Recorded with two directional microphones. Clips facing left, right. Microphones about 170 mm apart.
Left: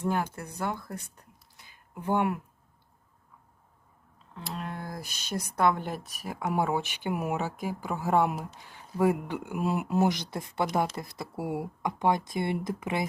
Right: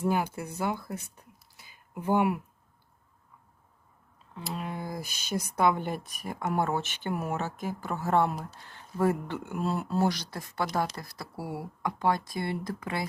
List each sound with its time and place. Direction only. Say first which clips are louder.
0.0 s speech: right 1 dB; 10° right (ahead or behind)
4.4 s speech: right 1 dB; 5° right (ahead or behind); by 13.1 s 20° left (ahead or behind)